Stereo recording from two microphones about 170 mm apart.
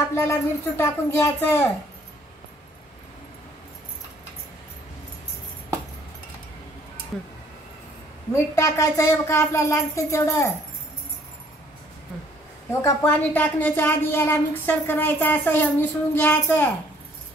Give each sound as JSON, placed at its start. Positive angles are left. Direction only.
{"t": 0.1, "sound": "speech", "side_deg": 15}
{"t": 8.3, "sound": "speech", "side_deg": 20}
{"t": 12.8, "sound": "speech", "side_deg": 10}